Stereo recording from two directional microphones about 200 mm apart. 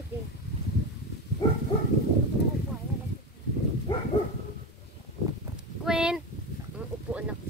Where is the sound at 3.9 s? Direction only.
20° left (ahead or behind).